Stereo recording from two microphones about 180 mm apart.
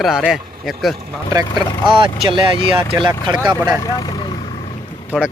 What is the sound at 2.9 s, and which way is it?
Speech, 15° right (ahead or behind).